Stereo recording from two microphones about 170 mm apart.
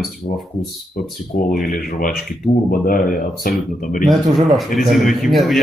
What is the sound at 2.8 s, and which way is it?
Speech, 55° left (ahead or behind).